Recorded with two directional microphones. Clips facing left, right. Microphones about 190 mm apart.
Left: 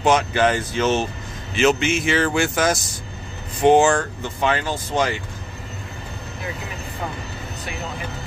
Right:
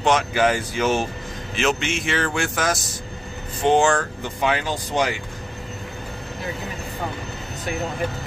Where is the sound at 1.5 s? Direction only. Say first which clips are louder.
Left 5 dB; centre (ahead or behind).